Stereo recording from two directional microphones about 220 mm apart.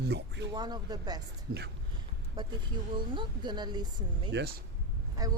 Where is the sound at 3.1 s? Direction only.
20° right (ahead or behind).